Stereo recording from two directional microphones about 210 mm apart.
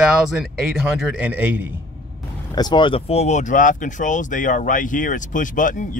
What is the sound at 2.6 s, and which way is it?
Speech, 20° left (ahead or behind).